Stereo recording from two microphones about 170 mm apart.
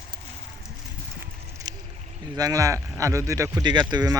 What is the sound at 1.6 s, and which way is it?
Boat, 25° right (ahead or behind).